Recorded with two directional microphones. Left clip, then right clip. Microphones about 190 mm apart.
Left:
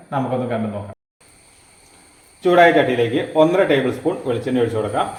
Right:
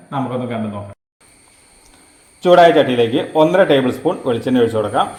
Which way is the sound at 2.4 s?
35° right (ahead or behind).